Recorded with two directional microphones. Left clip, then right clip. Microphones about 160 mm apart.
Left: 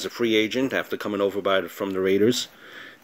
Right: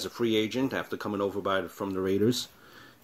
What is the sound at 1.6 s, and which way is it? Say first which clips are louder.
Speech: left 5 dB; 35° left (ahead or behind).